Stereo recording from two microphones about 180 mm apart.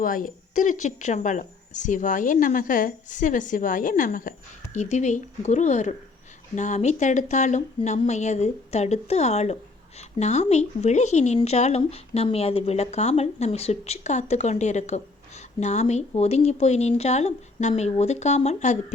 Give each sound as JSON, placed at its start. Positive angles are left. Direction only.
{"t": 0.0, "sound": "speech", "side_deg": 50}